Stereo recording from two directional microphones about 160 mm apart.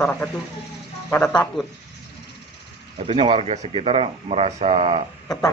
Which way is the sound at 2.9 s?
35° right (ahead or behind).